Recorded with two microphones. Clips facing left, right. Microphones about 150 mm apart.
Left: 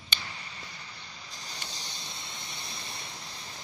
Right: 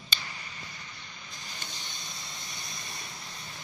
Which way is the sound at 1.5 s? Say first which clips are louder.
Left 1 dB; 35° left (ahead or behind).